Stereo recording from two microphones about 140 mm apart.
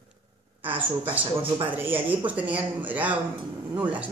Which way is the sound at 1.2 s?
40° right (ahead or behind).